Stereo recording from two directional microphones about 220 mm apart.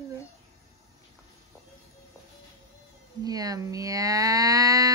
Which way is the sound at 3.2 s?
15° right (ahead or behind).